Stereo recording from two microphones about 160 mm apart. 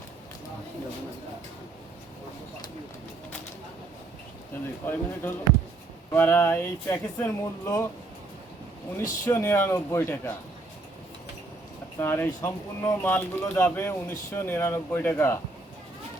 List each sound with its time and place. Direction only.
4.8 s speech: 10° left (ahead or behind)
6.1 s speech: 15° left (ahead or behind)
9.0 s speech: 20° left (ahead or behind)
11.9 s speech: 15° left (ahead or behind)